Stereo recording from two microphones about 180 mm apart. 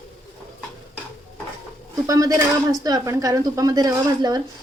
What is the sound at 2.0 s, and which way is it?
Speech, 20° right (ahead or behind).